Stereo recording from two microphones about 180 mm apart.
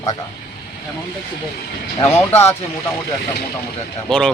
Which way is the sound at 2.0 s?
15° left (ahead or behind).